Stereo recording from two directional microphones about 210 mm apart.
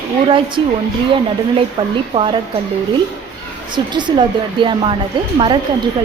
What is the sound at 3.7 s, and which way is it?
A woman's voice, 20° right (ahead or behind).